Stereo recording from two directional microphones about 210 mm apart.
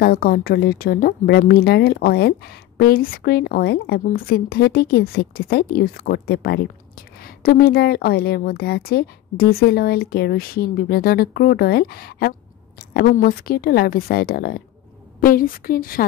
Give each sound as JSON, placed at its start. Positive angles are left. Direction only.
{"t": 0.0, "sound": "a woman's voice", "side_deg": 45}